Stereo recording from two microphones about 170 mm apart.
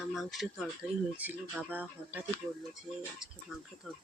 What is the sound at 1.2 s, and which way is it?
Speech, 10° right (ahead or behind).